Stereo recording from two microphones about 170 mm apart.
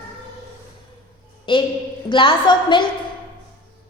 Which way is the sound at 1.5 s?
30° left (ahead or behind).